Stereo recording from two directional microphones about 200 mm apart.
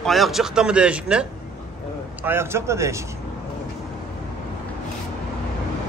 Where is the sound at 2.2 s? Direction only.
10° right (ahead or behind).